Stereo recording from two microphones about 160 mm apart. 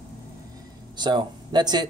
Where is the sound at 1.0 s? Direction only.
25° right (ahead or behind).